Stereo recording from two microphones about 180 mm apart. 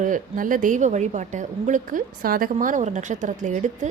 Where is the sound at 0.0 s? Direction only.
45° right (ahead or behind).